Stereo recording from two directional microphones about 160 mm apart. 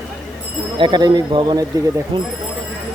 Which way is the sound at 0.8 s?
25° right (ahead or behind).